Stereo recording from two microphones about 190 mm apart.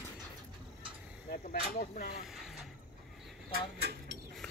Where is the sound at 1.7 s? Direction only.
45° left (ahead or behind).